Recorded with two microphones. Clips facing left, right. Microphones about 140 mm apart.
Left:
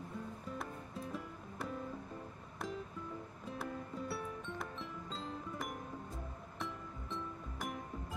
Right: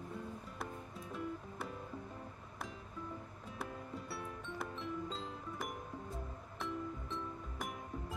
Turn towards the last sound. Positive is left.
turn(degrees=0)  # may be behind; listen again after turning